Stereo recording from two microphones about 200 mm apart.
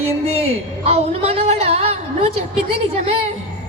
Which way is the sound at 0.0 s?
30° right (ahead or behind).